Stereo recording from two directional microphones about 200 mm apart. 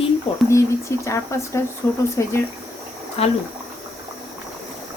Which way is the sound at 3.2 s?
30° left (ahead or behind).